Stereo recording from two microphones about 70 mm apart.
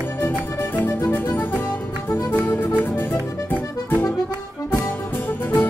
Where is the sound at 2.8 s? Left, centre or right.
Left.